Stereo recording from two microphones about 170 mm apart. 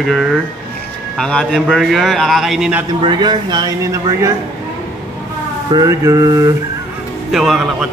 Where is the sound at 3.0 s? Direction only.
25° right (ahead or behind).